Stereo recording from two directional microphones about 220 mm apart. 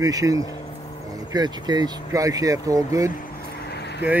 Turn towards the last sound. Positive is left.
turn(degrees=50)  # may be behind; listen again after turning